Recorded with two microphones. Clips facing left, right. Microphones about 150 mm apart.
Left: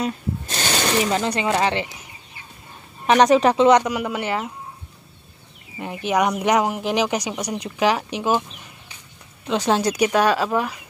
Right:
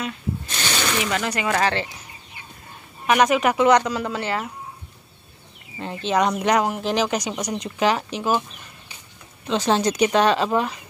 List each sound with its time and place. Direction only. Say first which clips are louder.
0.0 s speech: left 3 dB; 35° left (ahead or behind); by 1.9 s 20° left (ahead or behind)
3.1 s speech: left 3 dB; 35° left (ahead or behind); by 4.5 s 20° left (ahead or behind)
5.8 s speech: left 1 dB; 15° left (ahead or behind)
9.5 s speech: even; 10° left (ahead or behind)